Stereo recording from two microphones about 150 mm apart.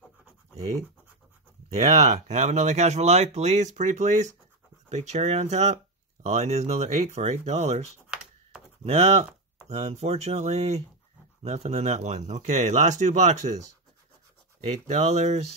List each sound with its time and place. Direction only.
1.8 s speech: 50° right (ahead or behind)
14.7 s speech: 50° right (ahead or behind)